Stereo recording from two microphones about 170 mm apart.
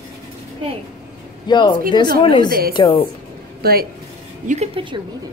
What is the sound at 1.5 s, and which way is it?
A woman's voice, 30° left (ahead or behind).